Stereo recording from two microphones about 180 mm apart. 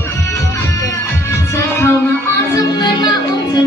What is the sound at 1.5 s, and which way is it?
Music, 15° left (ahead or behind).